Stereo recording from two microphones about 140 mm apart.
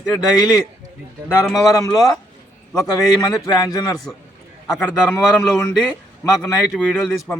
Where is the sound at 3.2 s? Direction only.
30° left (ahead or behind).